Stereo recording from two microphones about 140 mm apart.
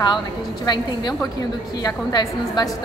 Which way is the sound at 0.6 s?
30° left (ahead or behind).